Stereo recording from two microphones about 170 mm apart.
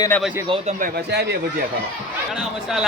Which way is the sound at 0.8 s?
70° right (ahead or behind).